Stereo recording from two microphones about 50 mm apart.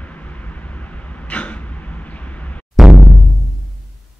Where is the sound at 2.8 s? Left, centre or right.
Centre.